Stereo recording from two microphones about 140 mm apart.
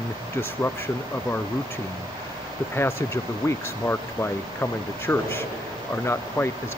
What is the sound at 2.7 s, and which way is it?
Speech, 20° left (ahead or behind).